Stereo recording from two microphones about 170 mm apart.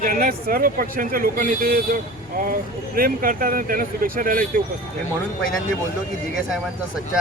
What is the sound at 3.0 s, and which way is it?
Speech, 55° right (ahead or behind).